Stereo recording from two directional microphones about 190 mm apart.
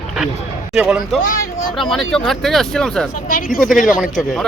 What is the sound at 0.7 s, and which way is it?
Speech, 5° right (ahead or behind).